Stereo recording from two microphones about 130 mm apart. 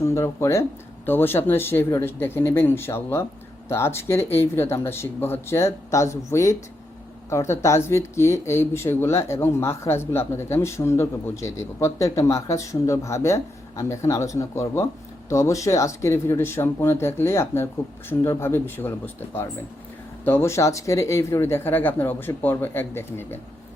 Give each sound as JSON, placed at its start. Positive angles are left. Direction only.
{"t": 0.0, "sound": "speech", "side_deg": 20}